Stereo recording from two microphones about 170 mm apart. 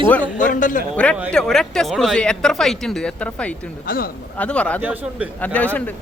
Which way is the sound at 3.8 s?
60° left (ahead or behind).